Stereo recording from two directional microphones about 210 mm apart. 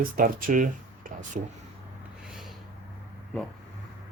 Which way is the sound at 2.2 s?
Centre (ahead or behind).